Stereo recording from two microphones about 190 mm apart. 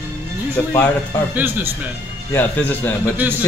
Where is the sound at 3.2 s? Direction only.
10° right (ahead or behind).